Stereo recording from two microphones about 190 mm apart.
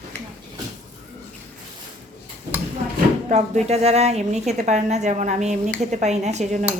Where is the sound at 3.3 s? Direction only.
35° right (ahead or behind).